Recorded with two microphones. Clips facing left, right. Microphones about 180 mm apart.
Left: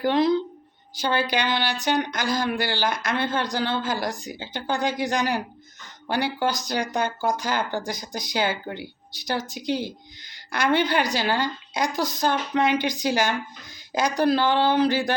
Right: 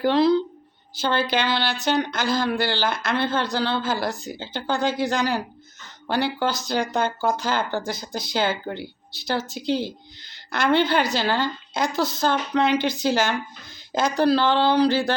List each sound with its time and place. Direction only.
0.1 s speech: 20° left (ahead or behind)